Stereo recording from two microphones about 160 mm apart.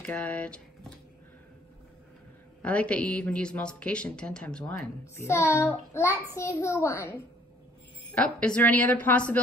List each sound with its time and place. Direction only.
0.0 s speech: 10° left (ahead or behind)
2.6 s a woman's voice: 10° left (ahead or behind)